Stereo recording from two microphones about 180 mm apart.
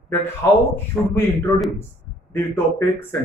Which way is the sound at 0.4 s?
15° left (ahead or behind).